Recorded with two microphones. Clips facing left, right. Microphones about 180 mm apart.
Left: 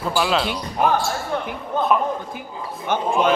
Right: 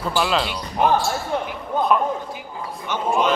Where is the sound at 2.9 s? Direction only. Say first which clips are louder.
Left 5 dB; 50° left (ahead or behind).